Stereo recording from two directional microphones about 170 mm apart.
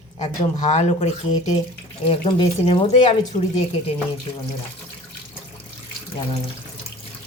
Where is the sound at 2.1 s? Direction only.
30° left (ahead or behind).